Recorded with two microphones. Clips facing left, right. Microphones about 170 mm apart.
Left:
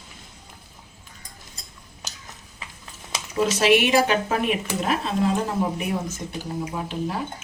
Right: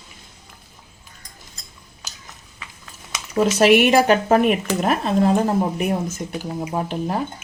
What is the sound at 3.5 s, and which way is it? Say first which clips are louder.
Speech: right 4 dB; 50° right (ahead or behind).